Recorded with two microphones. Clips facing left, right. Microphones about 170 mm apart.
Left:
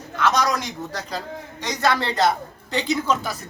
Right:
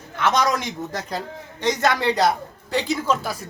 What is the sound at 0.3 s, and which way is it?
Speech, 25° right (ahead or behind).